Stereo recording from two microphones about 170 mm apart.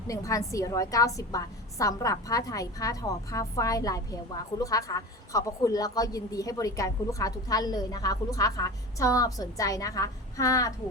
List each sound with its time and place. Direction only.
0.1 s a woman's voice: 20° left (ahead or behind)